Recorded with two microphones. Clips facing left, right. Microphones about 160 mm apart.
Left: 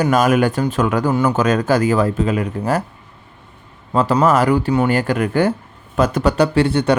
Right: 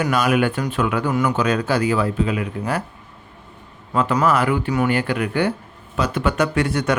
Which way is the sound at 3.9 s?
35° left (ahead or behind).